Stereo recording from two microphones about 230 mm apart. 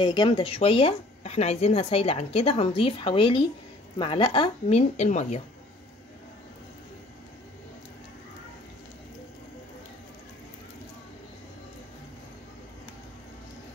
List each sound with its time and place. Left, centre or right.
0.0 s speech: centre